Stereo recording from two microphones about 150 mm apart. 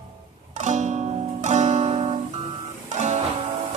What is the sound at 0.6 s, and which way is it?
Music, 50° right (ahead or behind).